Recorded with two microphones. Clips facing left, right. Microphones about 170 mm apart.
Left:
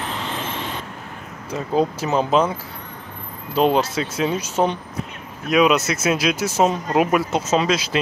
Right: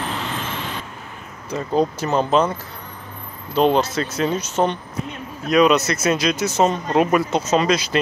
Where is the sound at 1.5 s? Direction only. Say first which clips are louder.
Right 1 dB; 5° left (ahead or behind).